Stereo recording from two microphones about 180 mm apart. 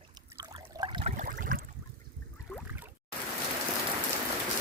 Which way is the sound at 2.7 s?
10° right (ahead or behind).